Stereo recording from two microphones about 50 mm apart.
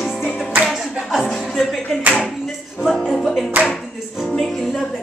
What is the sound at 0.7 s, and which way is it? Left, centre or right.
Clapping, centre.